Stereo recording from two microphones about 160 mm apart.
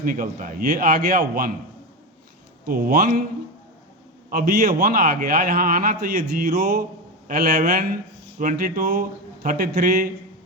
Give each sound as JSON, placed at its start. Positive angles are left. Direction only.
{"t": 0.0, "sound": "speech", "side_deg": -60}
{"t": 2.6, "sound": "speech", "side_deg": -60}
{"t": 4.8, "sound": "a man's voice", "side_deg": -70}